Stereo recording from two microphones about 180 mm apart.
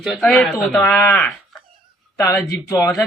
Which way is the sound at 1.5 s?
Centre (ahead or behind).